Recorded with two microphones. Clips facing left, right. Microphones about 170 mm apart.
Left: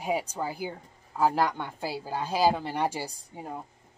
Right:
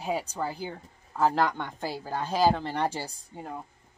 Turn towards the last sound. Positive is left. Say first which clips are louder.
# even
turn(degrees=10)  # may be behind; listen again after turning